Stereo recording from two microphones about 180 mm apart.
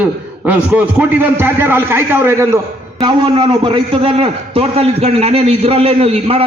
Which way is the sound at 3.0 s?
25° right (ahead or behind).